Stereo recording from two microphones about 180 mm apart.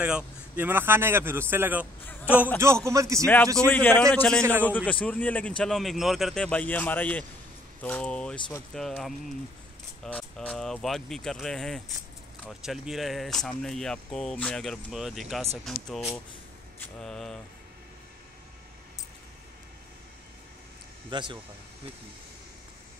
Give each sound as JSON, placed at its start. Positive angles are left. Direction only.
{"t": 0.0, "sound": "speech", "side_deg": -10}
{"t": 3.5, "sound": "speech", "side_deg": 10}
{"t": 4.4, "sound": "speech", "side_deg": -10}
{"t": 4.6, "sound": "speech", "side_deg": 10}
{"t": 21.1, "sound": "speech", "side_deg": -25}